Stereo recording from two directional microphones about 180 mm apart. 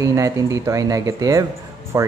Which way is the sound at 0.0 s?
20° right (ahead or behind).